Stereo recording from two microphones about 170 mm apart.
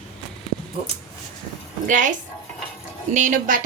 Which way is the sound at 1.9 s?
50° right (ahead or behind).